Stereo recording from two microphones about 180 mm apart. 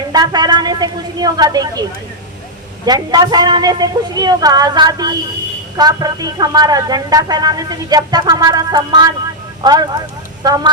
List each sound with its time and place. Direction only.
0.1 s speech: 20° right (ahead or behind)
2.8 s speech: 20° right (ahead or behind)